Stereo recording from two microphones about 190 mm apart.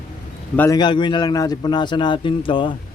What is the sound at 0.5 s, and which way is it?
Speech, 10° left (ahead or behind).